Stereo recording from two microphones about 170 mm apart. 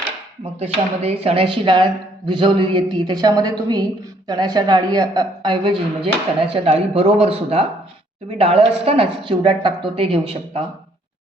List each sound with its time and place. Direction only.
0.6 s a woman's voice: 35° right (ahead or behind)